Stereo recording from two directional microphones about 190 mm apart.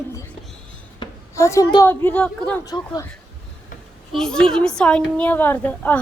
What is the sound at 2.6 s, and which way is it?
Speech, 20° left (ahead or behind).